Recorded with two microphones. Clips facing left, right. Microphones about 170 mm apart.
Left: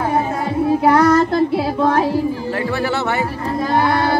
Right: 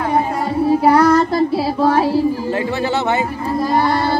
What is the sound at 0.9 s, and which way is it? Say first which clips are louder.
Child singing: even; centre (ahead or behind).